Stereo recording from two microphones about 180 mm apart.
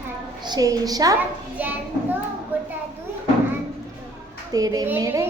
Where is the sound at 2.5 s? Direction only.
10° right (ahead or behind).